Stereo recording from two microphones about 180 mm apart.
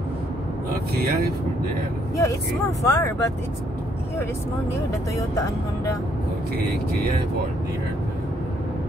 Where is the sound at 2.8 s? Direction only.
15° left (ahead or behind).